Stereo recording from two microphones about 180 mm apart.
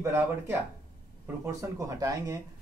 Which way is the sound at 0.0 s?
15° right (ahead or behind).